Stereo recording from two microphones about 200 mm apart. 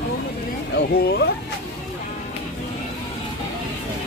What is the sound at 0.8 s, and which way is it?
Speech, 55° left (ahead or behind).